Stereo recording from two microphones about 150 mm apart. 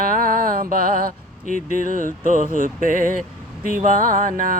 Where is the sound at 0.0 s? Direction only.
65° right (ahead or behind).